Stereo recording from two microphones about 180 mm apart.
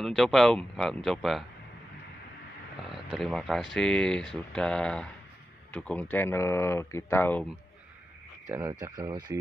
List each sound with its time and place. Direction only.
0.0 s speech: centre (ahead or behind)
2.9 s speech: centre (ahead or behind)
8.5 s speech: 15° right (ahead or behind)